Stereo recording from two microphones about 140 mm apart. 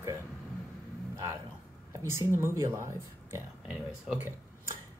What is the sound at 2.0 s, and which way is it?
Speech, 20° right (ahead or behind).